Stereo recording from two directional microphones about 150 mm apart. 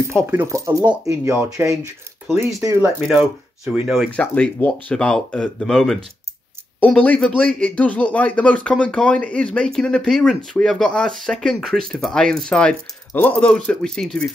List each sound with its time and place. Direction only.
0.1 s speech: 15° right (ahead or behind)
2.8 s speech: centre (ahead or behind)
4.2 s speech: 10° left (ahead or behind)